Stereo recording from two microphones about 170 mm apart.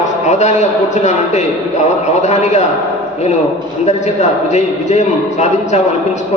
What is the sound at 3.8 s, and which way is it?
Music, 40° left (ahead or behind).